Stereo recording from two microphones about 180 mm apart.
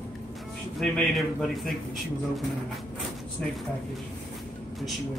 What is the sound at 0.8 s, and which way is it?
Speech, centre (ahead or behind).